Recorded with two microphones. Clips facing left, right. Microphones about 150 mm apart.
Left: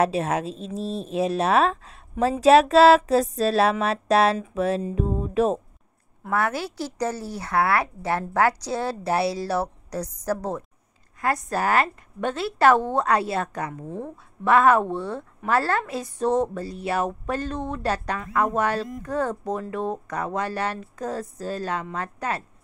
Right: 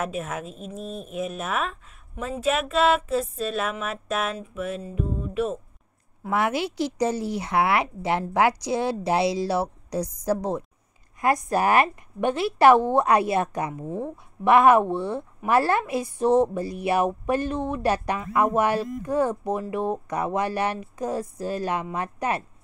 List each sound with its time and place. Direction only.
0.0 s a woman's voice: 90° left
0.7 s speech: 30° left (ahead or behind)
1.1 s a woman's voice: 90° left
6.3 s a woman's voice: 15° right (ahead or behind)